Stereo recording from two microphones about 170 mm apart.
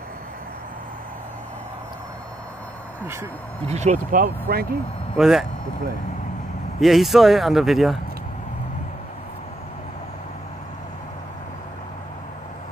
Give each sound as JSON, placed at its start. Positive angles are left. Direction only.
{"t": 3.6, "sound": "speech", "side_deg": -40}
{"t": 5.1, "sound": "speech", "side_deg": 0}
{"t": 6.8, "sound": "speech", "side_deg": 0}